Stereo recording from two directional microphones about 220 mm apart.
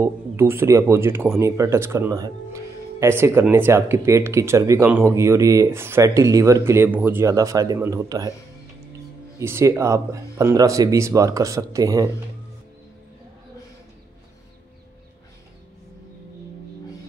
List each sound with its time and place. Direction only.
0.0 s speech: 10° right (ahead or behind)
9.4 s speech: 10° right (ahead or behind)